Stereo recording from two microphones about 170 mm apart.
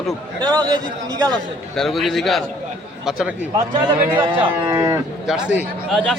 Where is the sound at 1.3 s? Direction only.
Centre (ahead or behind).